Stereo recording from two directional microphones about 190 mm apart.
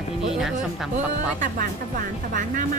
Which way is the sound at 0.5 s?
40° right (ahead or behind).